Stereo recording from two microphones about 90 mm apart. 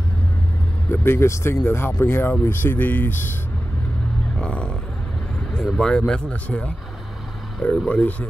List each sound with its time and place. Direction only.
0.8 s speech: 25° left (ahead or behind)
4.4 s a sound: 10° left (ahead or behind)
5.5 s speech: 10° left (ahead or behind)